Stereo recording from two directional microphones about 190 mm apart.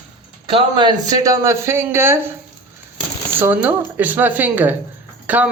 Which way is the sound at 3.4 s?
10° right (ahead or behind).